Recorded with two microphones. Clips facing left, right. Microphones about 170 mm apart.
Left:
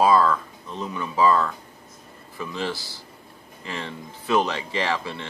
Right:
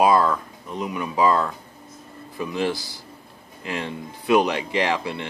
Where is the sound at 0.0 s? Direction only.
15° right (ahead or behind).